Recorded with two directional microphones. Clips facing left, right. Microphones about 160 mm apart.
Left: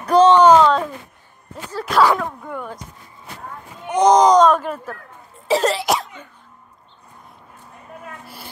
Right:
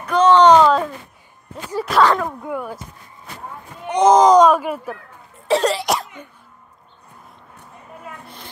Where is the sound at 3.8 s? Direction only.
Centre (ahead or behind).